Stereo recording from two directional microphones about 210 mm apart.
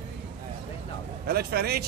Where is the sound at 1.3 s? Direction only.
50° right (ahead or behind).